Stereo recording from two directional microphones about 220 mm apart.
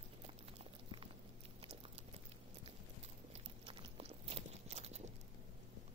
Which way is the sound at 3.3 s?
25° right (ahead or behind).